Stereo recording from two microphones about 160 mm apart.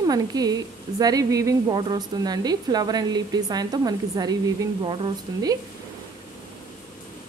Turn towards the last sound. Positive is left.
turn(degrees=-25)  # may be behind; listen again after turning